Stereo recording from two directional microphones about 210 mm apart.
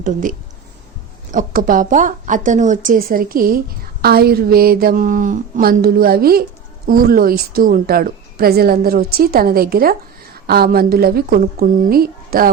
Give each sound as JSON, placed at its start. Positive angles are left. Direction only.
{"t": 0.0, "sound": "a woman's voice", "side_deg": -40}